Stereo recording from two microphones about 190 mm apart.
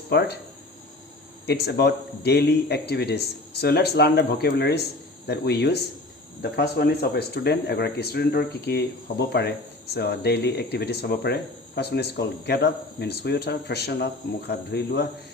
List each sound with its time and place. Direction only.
0.1 s a man's voice: 60° left (ahead or behind)
1.5 s a man's voice: 55° left (ahead or behind)